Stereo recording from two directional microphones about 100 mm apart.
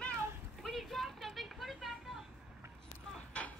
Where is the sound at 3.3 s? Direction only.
10° left (ahead or behind).